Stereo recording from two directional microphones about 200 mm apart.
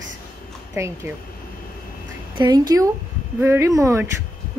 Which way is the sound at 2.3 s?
20° right (ahead or behind).